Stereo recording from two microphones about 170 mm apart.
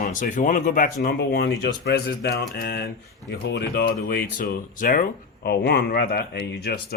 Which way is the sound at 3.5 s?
80° left.